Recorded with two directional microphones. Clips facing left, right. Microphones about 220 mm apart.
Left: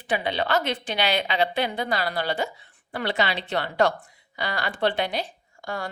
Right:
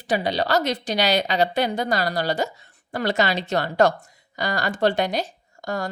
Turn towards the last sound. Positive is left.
turn(degrees=-40)  # may be behind; listen again after turning